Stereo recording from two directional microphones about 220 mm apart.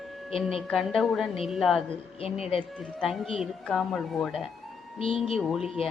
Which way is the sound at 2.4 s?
25° left (ahead or behind).